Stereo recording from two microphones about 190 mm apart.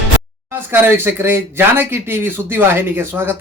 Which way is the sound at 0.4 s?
10° right (ahead or behind).